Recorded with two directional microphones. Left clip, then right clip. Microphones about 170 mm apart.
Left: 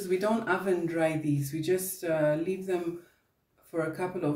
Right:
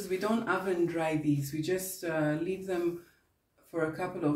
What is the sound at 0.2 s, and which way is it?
Speech, 30° left (ahead or behind).